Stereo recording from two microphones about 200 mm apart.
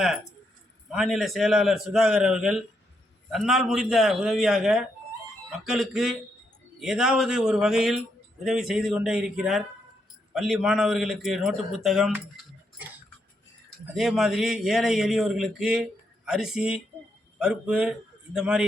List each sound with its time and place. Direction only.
0.9 s a man's voice: centre (ahead or behind)
13.9 s a man's voice: centre (ahead or behind)